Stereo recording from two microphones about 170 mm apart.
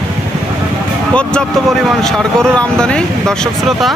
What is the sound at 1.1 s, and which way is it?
Speech, 5° left (ahead or behind).